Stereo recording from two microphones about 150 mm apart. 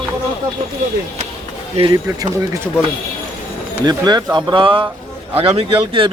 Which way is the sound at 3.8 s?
25° right (ahead or behind).